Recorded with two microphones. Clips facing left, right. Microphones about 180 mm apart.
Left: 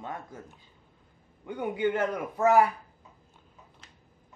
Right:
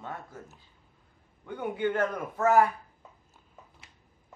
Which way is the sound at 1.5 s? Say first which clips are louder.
Left 2 dB; 15° left (ahead or behind).